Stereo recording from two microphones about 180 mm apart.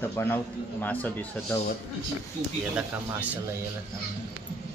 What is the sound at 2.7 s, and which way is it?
Speech, 10° right (ahead or behind).